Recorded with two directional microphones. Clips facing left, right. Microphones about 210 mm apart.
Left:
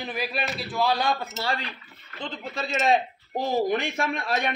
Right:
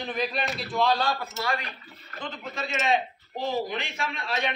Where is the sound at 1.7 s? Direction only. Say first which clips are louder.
Left 1 dB; 45° right (ahead or behind).